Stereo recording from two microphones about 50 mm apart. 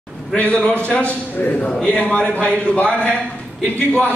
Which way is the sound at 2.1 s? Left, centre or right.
Left.